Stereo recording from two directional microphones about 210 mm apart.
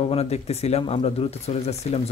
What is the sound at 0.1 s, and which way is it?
Speech, 30° left (ahead or behind).